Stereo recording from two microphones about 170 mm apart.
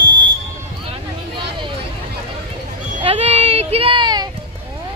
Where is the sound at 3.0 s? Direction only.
35° right (ahead or behind).